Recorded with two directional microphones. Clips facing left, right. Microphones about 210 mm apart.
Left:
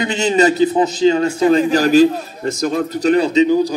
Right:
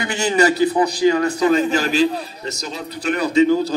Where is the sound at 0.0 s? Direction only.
20° left (ahead or behind); by 3.2 s 45° left (ahead or behind).